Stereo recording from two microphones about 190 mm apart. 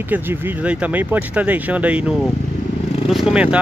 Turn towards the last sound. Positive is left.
turn(degrees=-5)  # may be behind; listen again after turning